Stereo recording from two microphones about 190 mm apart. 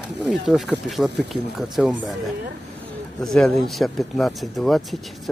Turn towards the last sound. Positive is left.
turn(degrees=0)  # may be behind; listen again after turning